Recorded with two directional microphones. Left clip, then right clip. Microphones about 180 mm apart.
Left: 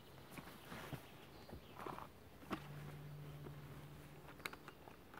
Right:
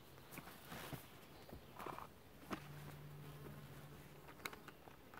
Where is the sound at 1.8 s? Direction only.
20° right (ahead or behind).